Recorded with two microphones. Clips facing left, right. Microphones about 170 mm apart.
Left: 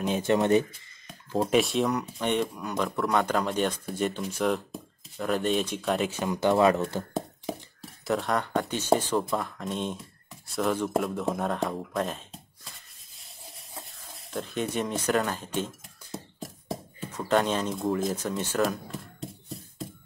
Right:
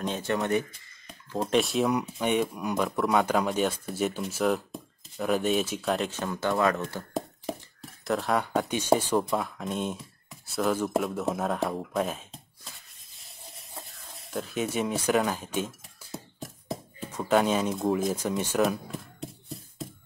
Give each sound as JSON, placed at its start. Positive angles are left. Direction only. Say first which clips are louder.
{"t": 0.0, "sound": "speech", "louder": "left 3 dB", "side_deg": 10}
{"t": 0.3, "sound": "speech", "louder": "left 5 dB", "side_deg": 25}
{"t": 1.4, "sound": "speech", "louder": "left 1 dB", "side_deg": 0}
{"t": 6.1, "sound": "speech", "louder": "left 4 dB", "side_deg": 15}
{"t": 7.5, "sound": "a sound", "louder": "even", "side_deg": 0}
{"t": 8.0, "sound": "speech", "louder": "even", "side_deg": 0}
{"t": 17.1, "sound": "speech", "louder": "right 1 dB", "side_deg": -10}
{"t": 18.1, "sound": "speech", "louder": "right 2 dB", "side_deg": -10}
{"t": 18.7, "sound": "a sound", "louder": "right 2 dB", "side_deg": 0}